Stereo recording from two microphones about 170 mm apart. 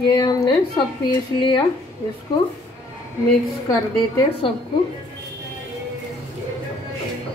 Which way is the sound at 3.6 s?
25° left (ahead or behind).